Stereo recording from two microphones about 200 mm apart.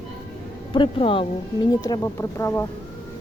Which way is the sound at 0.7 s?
25° left (ahead or behind).